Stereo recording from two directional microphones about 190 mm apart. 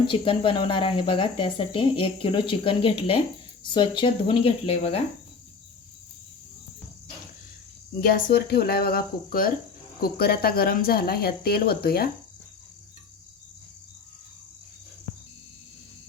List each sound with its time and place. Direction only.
0.1 s speech: 25° left (ahead or behind)
8.0 s speech: 55° left (ahead or behind)